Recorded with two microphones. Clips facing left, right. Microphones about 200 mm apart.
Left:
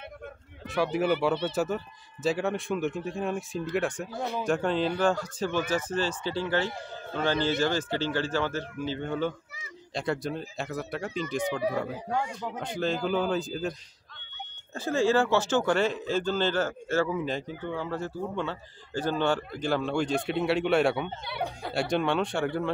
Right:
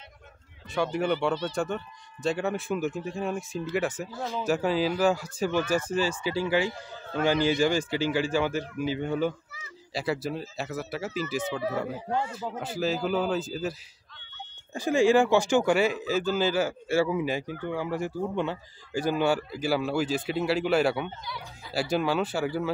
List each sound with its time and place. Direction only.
0.7 s speech: centre (ahead or behind)
11.4 s speech: 15° left (ahead or behind)
12.5 s speech: 5° right (ahead or behind)
14.7 s speech: 15° right (ahead or behind)
21.2 s speech: 65° left (ahead or behind)
21.7 s speech: centre (ahead or behind)